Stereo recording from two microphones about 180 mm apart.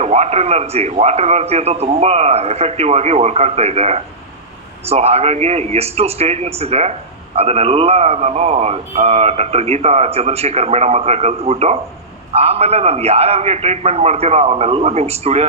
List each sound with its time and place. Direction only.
0.0 s speech: 35° right (ahead or behind)